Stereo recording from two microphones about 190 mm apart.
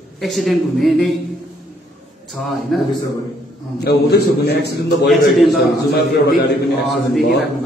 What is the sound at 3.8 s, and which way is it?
A man's voice, 55° left (ahead or behind).